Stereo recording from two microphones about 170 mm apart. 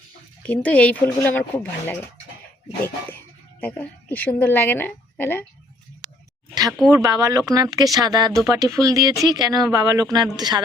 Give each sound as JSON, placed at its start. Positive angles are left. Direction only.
{"t": 0.4, "sound": "speech", "side_deg": 10}
{"t": 3.6, "sound": "speech", "side_deg": 10}
{"t": 6.5, "sound": "a sound", "side_deg": -20}
{"t": 6.9, "sound": "speech", "side_deg": -20}